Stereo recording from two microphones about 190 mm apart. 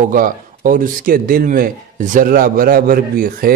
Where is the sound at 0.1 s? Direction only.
45° right (ahead or behind).